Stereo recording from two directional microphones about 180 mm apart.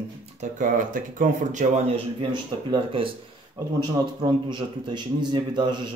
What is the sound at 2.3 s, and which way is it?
Speech, 30° right (ahead or behind).